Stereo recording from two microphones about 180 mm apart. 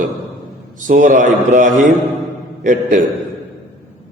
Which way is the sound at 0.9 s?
45° right (ahead or behind).